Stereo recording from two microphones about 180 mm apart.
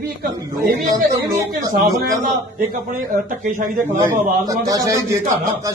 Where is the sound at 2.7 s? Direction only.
50° right (ahead or behind).